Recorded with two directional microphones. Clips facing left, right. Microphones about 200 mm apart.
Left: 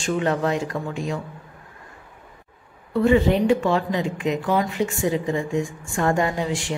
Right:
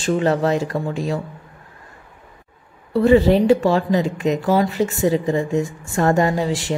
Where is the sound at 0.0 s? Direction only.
35° right (ahead or behind).